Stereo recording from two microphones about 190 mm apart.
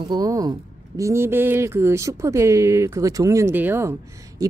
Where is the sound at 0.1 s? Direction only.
20° right (ahead or behind).